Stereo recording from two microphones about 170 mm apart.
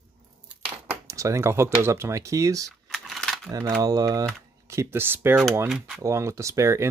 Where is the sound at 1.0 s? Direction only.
20° right (ahead or behind).